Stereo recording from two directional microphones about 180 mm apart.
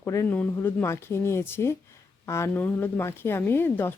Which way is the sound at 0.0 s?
15° left (ahead or behind).